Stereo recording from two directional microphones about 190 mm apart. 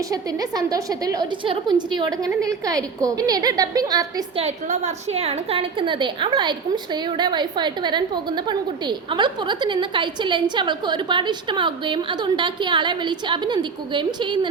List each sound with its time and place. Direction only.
0.1 s a woman's voice: 20° right (ahead or behind)
4.4 s a woman's voice: 35° right (ahead or behind)